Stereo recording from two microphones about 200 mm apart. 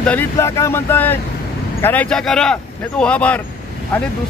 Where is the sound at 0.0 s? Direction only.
10° left (ahead or behind).